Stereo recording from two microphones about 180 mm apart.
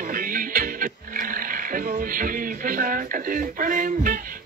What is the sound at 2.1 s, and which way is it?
Speech, 50° right (ahead or behind).